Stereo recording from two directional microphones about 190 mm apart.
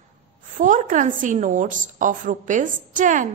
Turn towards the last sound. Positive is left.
turn(degrees=-40)  # may be behind; listen again after turning